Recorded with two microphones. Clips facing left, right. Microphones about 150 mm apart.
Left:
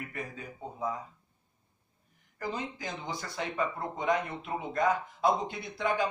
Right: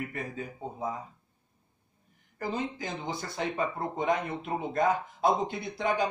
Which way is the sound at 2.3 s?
25° right (ahead or behind).